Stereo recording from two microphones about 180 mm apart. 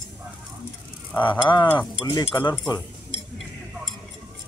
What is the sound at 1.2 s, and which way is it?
Speech, 25° left (ahead or behind).